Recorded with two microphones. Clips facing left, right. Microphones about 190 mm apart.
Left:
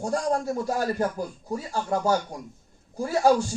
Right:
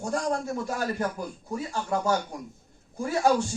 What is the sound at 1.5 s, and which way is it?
Speech, 35° left (ahead or behind).